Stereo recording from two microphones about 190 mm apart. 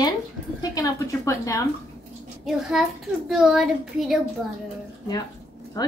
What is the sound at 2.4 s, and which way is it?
A child's voice, centre (ahead or behind).